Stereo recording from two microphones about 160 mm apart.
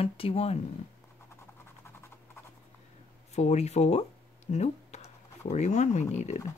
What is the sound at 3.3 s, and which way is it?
Speech, 45° left (ahead or behind).